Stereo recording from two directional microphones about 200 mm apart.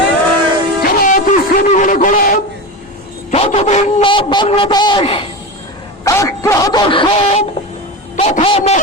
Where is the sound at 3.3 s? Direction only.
30° left (ahead or behind).